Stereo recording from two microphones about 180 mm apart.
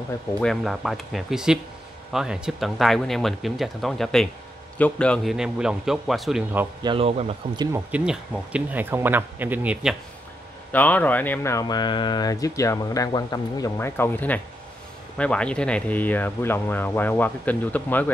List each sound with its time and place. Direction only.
0.3 s speech: 5° left (ahead or behind)
6.8 s speech: 30° right (ahead or behind)
7.9 s speech: 5° right (ahead or behind)
10.7 s speech: 10° left (ahead or behind)